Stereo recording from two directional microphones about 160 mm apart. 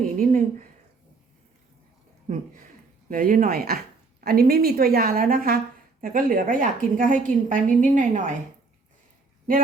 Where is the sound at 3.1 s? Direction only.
60° right (ahead or behind).